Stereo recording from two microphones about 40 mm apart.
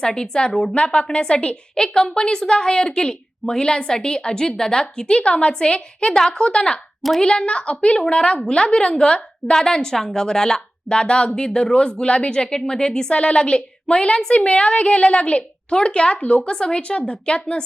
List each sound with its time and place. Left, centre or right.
0.0 s a woman's voice: centre
16.8 s a woman's voice: left